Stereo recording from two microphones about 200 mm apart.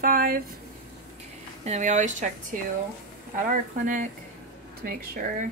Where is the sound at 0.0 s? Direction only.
50° right (ahead or behind).